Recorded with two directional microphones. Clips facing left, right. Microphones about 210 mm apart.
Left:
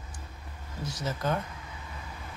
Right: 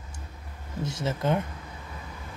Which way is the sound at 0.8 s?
25° right (ahead or behind).